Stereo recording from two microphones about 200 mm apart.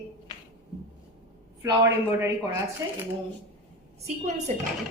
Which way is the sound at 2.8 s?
15° right (ahead or behind).